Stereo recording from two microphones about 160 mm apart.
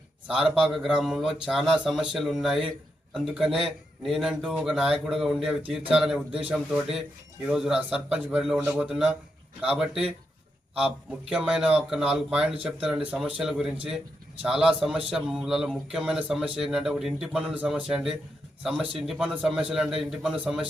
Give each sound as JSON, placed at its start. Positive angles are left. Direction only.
{"t": 0.3, "sound": "a man's voice", "side_deg": -5}
{"t": 11.3, "sound": "a man's voice", "side_deg": -5}